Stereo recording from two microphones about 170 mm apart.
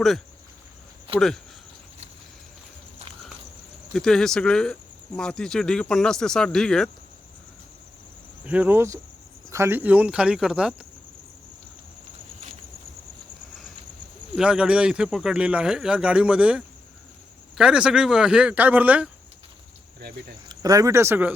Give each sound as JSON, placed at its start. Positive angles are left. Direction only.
{"t": 1.1, "sound": "speech", "side_deg": -35}
{"t": 3.9, "sound": "speech", "side_deg": 5}
{"t": 8.4, "sound": "speech", "side_deg": -10}
{"t": 14.3, "sound": "speech", "side_deg": -5}
{"t": 20.5, "sound": "speech", "side_deg": -20}